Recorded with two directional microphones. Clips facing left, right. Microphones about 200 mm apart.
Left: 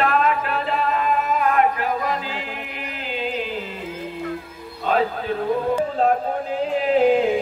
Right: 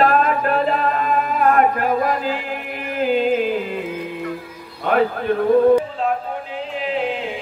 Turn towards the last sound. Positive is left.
turn(degrees=40)  # may be behind; listen again after turning